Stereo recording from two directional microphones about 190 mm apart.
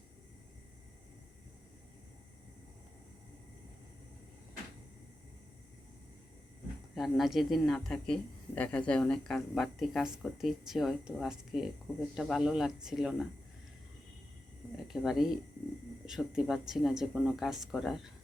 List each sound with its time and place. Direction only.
6.9 s speech: centre (ahead or behind)
14.8 s speech: centre (ahead or behind)